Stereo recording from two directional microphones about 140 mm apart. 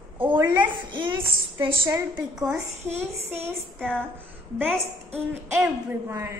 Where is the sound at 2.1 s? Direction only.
5° right (ahead or behind).